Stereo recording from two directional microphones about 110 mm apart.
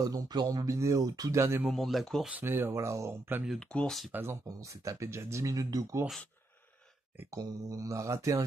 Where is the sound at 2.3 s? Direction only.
20° right (ahead or behind).